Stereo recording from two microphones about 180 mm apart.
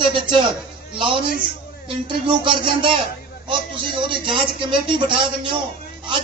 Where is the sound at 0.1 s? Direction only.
25° right (ahead or behind).